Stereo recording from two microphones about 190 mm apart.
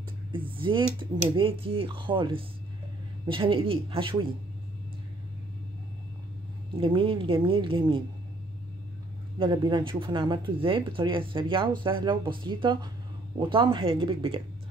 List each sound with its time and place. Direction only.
0.3 s speech: 25° right (ahead or behind)
6.8 s speech: 30° right (ahead or behind)
9.4 s speech: 25° right (ahead or behind)